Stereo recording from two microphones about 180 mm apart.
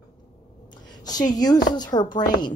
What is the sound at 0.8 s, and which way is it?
Speech, 20° left (ahead or behind).